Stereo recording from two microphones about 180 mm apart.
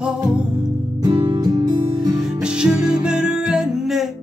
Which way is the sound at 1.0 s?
20° right (ahead or behind).